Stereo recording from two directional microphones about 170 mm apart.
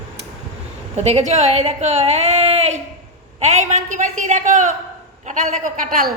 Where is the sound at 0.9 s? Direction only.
40° right (ahead or behind).